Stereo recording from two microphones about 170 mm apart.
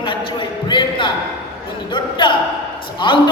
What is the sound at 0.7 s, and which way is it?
A man's voice, 30° left (ahead or behind).